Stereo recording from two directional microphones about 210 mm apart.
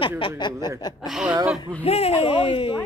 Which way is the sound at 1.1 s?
Centre (ahead or behind).